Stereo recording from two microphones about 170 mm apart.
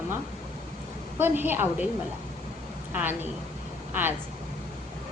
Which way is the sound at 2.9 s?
10° right (ahead or behind).